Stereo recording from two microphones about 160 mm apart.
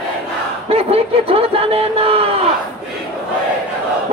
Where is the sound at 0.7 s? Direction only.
40° right (ahead or behind).